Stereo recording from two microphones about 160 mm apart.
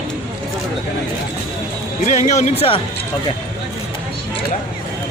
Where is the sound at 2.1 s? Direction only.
50° left (ahead or behind).